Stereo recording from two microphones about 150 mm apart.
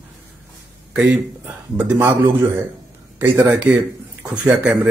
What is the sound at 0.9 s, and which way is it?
Speech, 10° right (ahead or behind).